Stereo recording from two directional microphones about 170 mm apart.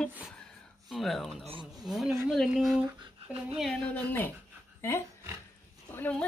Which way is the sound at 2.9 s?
35° right (ahead or behind).